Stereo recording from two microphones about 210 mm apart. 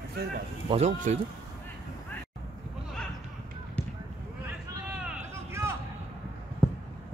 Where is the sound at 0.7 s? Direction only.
30° right (ahead or behind).